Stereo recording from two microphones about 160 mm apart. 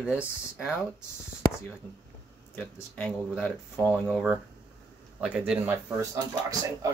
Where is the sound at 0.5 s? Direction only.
5° right (ahead or behind).